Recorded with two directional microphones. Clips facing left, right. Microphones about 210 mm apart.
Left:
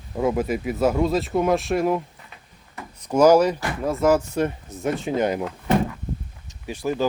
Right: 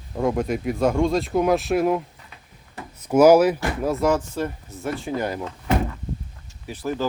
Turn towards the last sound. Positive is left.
turn(degrees=15)  # may be behind; listen again after turning